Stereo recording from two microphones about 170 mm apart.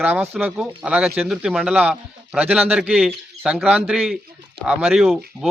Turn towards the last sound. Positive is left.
turn(degrees=0)  # may be behind; listen again after turning